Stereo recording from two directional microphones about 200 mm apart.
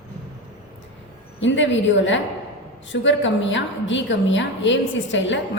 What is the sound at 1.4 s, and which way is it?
A woman's voice, 65° left (ahead or behind).